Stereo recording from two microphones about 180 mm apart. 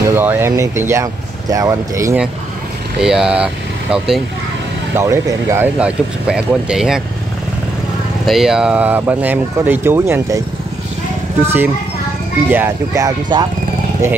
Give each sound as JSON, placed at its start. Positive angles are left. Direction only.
{"t": 0.0, "sound": "speech", "side_deg": -10}
{"t": 3.0, "sound": "speech", "side_deg": -5}
{"t": 4.9, "sound": "speech", "side_deg": -15}
{"t": 8.3, "sound": "speech", "side_deg": 0}
{"t": 11.4, "sound": "speech", "side_deg": -10}